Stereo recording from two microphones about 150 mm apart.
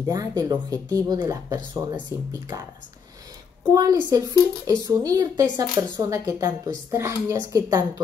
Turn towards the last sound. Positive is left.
turn(degrees=-25)  # may be behind; listen again after turning